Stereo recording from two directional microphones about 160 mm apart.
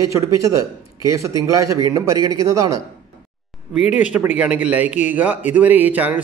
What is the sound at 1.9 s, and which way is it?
Speech, 20° right (ahead or behind).